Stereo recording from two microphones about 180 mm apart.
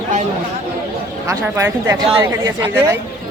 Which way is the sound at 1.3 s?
15° right (ahead or behind).